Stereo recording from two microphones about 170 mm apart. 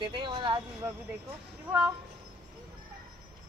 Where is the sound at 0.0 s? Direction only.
30° right (ahead or behind).